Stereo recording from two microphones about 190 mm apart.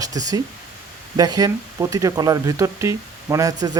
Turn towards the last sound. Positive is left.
turn(degrees=-15)  # may be behind; listen again after turning